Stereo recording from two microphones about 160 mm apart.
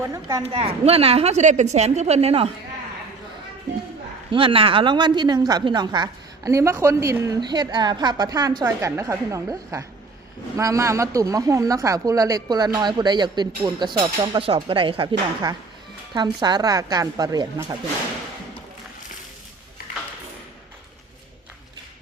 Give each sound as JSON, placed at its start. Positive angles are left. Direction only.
{"t": 0.0, "sound": "a woman's voice", "side_deg": -20}
{"t": 0.4, "sound": "a woman's voice", "side_deg": -40}
{"t": 4.3, "sound": "a woman's voice", "side_deg": -35}
{"t": 16.1, "sound": "a woman's voice", "side_deg": -25}